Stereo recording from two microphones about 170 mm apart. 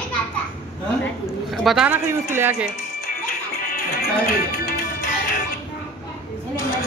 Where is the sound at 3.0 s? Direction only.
55° left (ahead or behind).